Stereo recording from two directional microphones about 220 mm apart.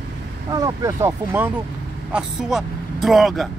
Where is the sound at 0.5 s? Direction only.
15° right (ahead or behind); by 3.4 s centre (ahead or behind).